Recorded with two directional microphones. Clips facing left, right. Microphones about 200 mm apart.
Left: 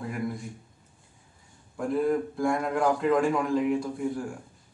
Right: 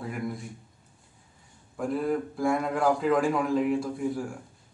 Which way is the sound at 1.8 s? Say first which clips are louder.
Left 2 dB; centre (ahead or behind).